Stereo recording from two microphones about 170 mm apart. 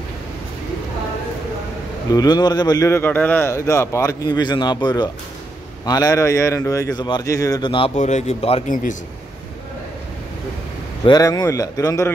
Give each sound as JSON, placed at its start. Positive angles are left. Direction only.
{"t": 2.1, "sound": "a man's voice", "side_deg": 25}
{"t": 7.9, "sound": "speech", "side_deg": 45}
{"t": 8.6, "sound": "a man's voice", "side_deg": 50}
{"t": 11.1, "sound": "a man's voice", "side_deg": 20}